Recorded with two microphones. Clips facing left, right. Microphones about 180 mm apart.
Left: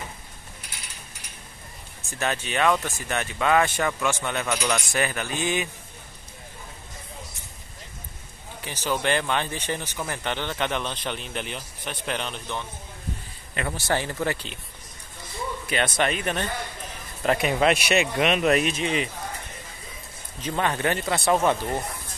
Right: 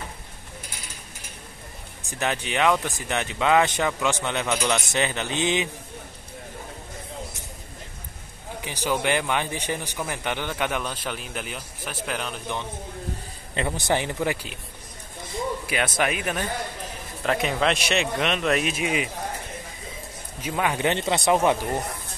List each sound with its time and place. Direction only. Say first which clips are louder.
2.0 s a man's voice: right 1 dB; 15° right (ahead or behind)
4.8 s mantra: right 1 dB; 20° right (ahead or behind)
8.5 s a man's voice: right 2 dB; 15° right (ahead or behind)
13.7 s a man's voice: right 1 dB; 15° right (ahead or behind)
15.6 s a sound: left 5 dB; 5° right (ahead or behind)
16.0 s a man's voice: even; 5° right (ahead or behind)
20.3 s a man's voice: even; 10° right (ahead or behind)